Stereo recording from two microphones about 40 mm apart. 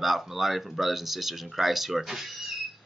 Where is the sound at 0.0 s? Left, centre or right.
Centre.